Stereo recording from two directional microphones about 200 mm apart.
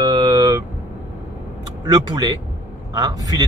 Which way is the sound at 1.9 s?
20° right (ahead or behind).